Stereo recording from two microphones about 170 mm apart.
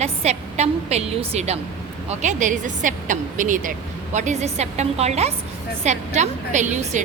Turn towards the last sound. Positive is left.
turn(degrees=-45)  # may be behind; listen again after turning